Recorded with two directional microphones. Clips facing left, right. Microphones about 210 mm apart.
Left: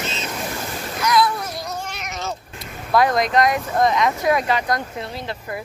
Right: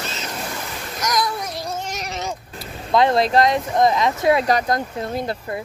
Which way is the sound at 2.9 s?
25° right (ahead or behind).